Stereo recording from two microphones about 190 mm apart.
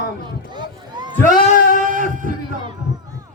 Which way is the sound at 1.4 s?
50° left (ahead or behind).